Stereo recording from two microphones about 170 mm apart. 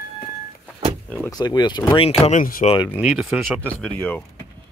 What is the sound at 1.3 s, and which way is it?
Speech, 25° left (ahead or behind).